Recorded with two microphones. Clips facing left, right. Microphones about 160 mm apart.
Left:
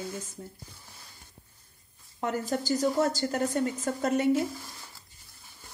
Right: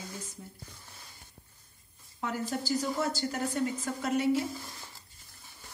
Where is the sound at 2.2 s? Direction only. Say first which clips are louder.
Left 4 dB; 45° left (ahead or behind).